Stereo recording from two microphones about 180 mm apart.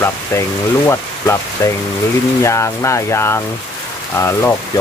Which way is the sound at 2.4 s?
15° left (ahead or behind).